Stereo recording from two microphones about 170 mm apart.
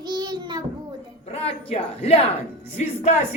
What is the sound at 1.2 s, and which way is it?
A woman's voice, 35° left (ahead or behind).